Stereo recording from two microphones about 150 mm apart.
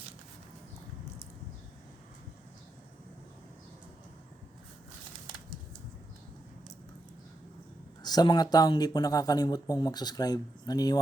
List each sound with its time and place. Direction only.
8.0 s speech: 30° left (ahead or behind)